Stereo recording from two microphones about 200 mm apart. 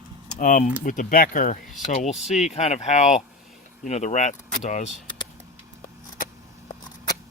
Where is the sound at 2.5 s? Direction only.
35° left (ahead or behind).